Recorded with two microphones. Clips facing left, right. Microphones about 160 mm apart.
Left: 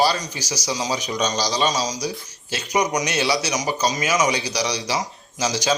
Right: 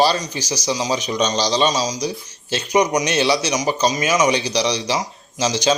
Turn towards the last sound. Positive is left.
turn(degrees=-25)  # may be behind; listen again after turning